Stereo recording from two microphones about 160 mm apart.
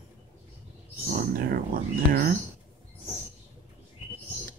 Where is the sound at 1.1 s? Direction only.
65° right (ahead or behind).